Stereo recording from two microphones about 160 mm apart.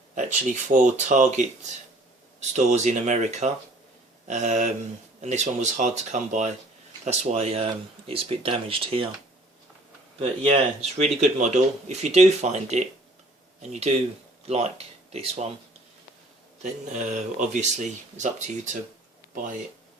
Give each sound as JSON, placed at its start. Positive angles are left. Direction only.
{"t": 0.7, "sound": "speech", "side_deg": -50}
{"t": 10.2, "sound": "speech", "side_deg": -40}
{"t": 16.9, "sound": "speech", "side_deg": -50}